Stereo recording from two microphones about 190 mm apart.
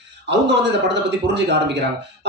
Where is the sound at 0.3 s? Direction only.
65° right (ahead or behind).